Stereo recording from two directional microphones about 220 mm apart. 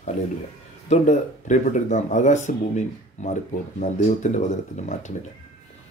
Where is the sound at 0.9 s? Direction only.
30° left (ahead or behind).